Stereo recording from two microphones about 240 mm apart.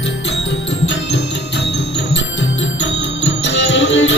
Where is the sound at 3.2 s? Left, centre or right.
Left.